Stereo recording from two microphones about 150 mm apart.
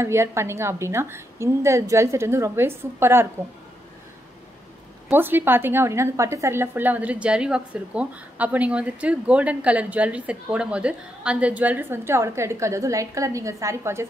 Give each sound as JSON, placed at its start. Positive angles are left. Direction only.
{"t": 0.0, "sound": "a woman's voice", "side_deg": -20}
{"t": 5.1, "sound": "a woman's voice", "side_deg": -15}